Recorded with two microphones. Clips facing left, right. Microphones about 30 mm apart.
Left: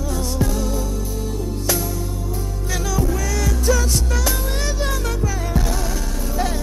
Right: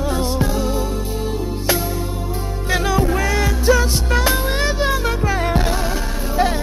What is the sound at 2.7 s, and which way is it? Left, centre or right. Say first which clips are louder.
Music: right 5 dB; right.